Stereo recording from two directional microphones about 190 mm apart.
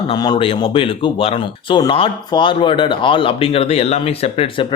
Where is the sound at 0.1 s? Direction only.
25° left (ahead or behind).